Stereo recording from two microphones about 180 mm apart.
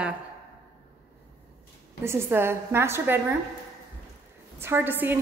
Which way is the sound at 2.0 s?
15° right (ahead or behind).